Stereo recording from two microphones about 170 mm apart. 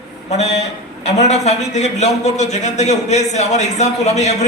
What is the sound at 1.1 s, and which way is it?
A man's voice, 40° left (ahead or behind).